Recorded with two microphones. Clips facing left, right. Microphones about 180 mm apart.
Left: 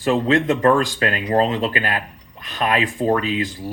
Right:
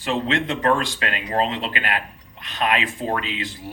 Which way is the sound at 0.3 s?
40° left (ahead or behind).